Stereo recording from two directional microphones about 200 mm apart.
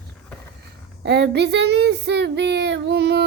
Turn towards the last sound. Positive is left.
turn(degrees=-55)  # may be behind; listen again after turning